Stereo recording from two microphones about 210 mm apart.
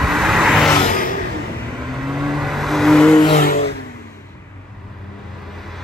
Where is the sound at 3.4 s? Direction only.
45° left (ahead or behind).